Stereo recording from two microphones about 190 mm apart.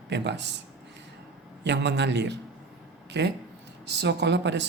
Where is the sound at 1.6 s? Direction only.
65° right (ahead or behind).